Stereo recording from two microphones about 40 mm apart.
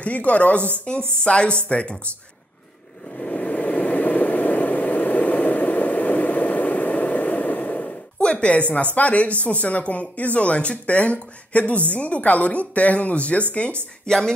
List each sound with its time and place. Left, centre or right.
0.0 s speech: left
3.2 s vehicle: left
8.9 s speech: left
14.0 s a woman's voice: centre